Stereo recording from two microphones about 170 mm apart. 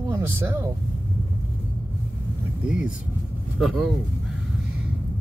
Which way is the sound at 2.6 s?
5° right (ahead or behind).